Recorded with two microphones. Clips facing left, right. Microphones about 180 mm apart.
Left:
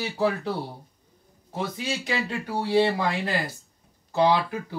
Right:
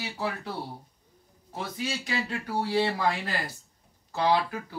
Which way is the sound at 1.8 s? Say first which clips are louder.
Even; 25° left (ahead or behind).